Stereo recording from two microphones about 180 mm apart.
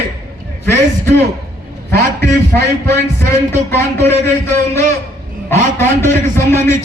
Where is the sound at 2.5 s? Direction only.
15° left (ahead or behind).